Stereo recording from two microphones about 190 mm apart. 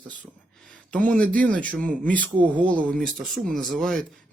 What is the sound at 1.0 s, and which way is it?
Speech, 5° left (ahead or behind).